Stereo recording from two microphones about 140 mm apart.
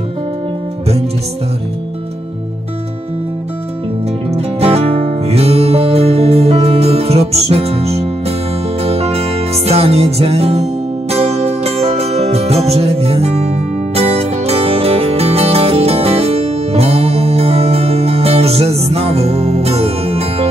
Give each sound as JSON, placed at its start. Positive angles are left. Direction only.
{"t": 4.3, "sound": "music", "side_deg": -45}